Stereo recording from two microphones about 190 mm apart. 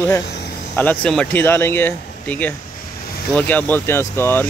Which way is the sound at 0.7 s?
10° left (ahead or behind).